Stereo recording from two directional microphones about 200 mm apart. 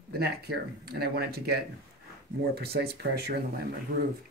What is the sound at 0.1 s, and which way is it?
Speech, 50° right (ahead or behind).